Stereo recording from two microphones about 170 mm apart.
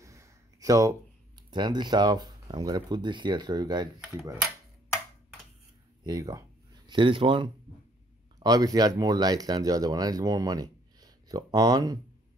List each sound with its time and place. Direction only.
0.0 s a sound: 20° right (ahead or behind)
1.5 s speech: 25° right (ahead or behind)
4.0 s speech: centre (ahead or behind)
6.0 s speech: 20° right (ahead or behind)